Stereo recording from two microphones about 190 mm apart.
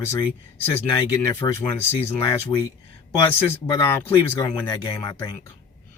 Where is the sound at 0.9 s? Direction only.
20° left (ahead or behind).